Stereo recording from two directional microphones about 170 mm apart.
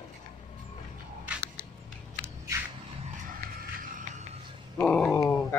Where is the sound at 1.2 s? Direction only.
10° right (ahead or behind).